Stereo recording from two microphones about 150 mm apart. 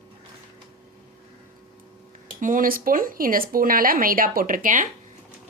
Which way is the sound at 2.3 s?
65° right (ahead or behind).